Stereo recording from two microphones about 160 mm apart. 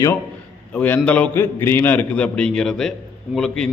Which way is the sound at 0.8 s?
10° left (ahead or behind).